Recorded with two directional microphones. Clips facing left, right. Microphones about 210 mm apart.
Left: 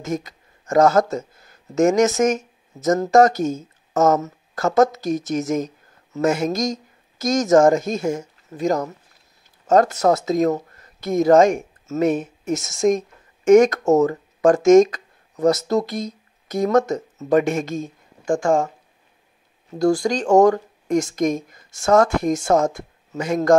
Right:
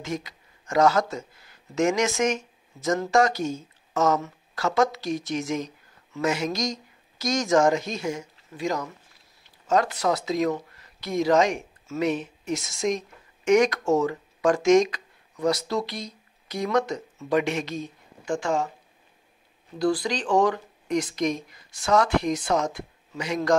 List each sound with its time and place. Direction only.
0.0 s a woman's voice: 45° left (ahead or behind)
19.8 s speech: 45° left (ahead or behind)